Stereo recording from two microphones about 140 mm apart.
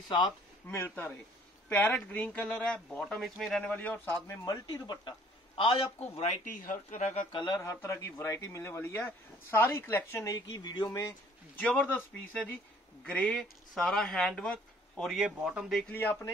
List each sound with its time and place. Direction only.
0.7 s speech: 15° left (ahead or behind)
4.6 s speech: 30° left (ahead or behind)
5.6 s a man's voice: 40° left (ahead or behind)
6.4 s speech: 75° left (ahead or behind)
7.3 s a man's voice: 30° left (ahead or behind)
11.5 s speech: 10° left (ahead or behind); by 15.8 s 5° right (ahead or behind)